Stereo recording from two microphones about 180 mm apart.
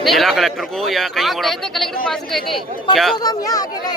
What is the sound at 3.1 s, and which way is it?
Speech, 20° left (ahead or behind).